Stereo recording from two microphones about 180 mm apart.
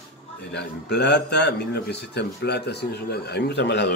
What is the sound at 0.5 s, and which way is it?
A man's voice, 65° left (ahead or behind).